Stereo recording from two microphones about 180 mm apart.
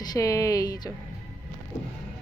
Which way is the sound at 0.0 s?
20° left (ahead or behind).